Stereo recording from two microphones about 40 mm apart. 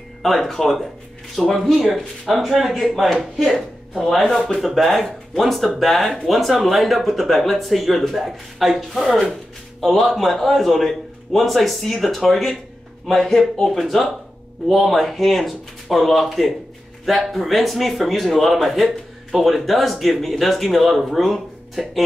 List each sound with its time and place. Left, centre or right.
0.2 s speech: centre